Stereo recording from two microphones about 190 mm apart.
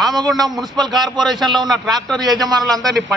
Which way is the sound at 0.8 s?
20° right (ahead or behind).